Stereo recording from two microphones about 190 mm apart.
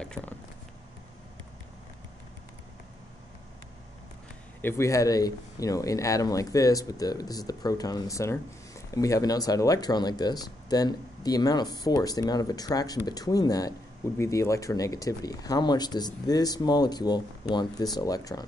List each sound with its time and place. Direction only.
0.0 s cat: 5° left (ahead or behind)
4.6 s speech: 15° left (ahead or behind)